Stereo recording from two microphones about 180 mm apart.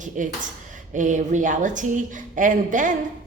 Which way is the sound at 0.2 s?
45° right (ahead or behind).